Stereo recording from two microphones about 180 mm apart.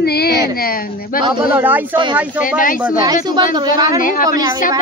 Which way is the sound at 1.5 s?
10° right (ahead or behind).